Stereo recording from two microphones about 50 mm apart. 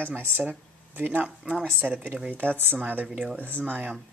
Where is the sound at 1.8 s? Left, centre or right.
Centre.